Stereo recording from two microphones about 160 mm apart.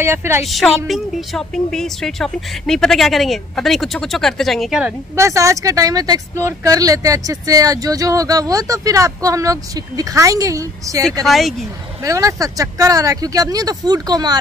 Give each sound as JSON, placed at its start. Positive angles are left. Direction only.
{"t": 0.0, "sound": "a woman's voice", "side_deg": -15}
{"t": 0.5, "sound": "speech", "side_deg": 0}
{"t": 5.1, "sound": "speech", "side_deg": -20}
{"t": 11.2, "sound": "speech", "side_deg": 0}
{"t": 12.0, "sound": "speech", "side_deg": -20}